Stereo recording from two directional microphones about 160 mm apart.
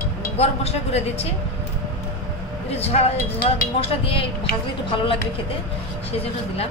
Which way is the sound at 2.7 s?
40° left (ahead or behind).